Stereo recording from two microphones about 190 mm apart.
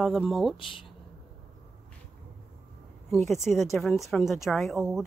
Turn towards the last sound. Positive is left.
turn(degrees=0)  # may be behind; listen again after turning